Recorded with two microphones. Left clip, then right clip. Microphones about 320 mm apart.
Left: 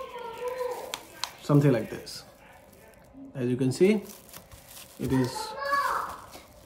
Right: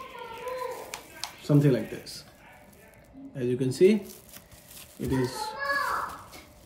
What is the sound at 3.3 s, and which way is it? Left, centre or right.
Speech, centre.